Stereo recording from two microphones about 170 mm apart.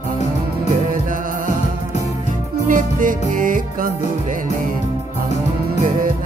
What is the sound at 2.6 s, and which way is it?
Music, 50° right (ahead or behind).